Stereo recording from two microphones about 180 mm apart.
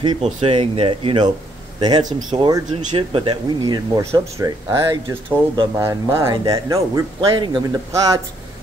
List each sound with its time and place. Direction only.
0.0 s speech: 30° right (ahead or behind)